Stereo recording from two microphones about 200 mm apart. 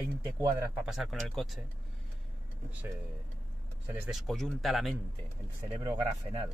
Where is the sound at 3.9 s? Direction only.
5° right (ahead or behind).